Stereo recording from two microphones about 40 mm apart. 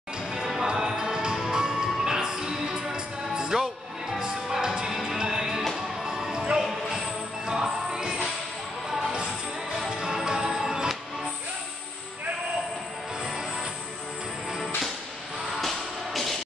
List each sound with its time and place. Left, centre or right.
0.3 s music: centre
9.8 s music: centre
15.6 s music: centre